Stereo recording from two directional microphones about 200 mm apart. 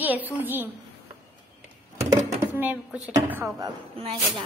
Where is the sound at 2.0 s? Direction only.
35° right (ahead or behind).